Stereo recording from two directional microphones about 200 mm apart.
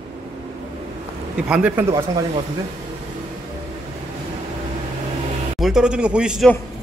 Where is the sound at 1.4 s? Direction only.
5° right (ahead or behind).